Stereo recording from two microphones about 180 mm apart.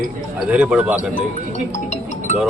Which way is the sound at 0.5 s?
5° right (ahead or behind).